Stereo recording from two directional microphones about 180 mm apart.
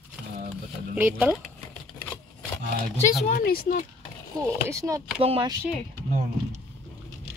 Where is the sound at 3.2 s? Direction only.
55° left (ahead or behind).